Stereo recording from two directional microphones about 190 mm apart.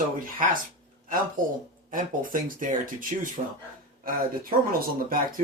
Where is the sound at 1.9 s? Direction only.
45° right (ahead or behind).